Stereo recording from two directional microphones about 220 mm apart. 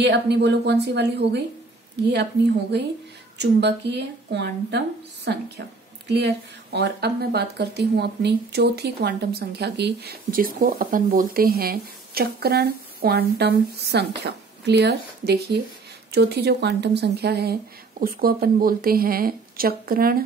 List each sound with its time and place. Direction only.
0.0 s speech: 50° right (ahead or behind)
2.7 s speech: 50° right (ahead or behind)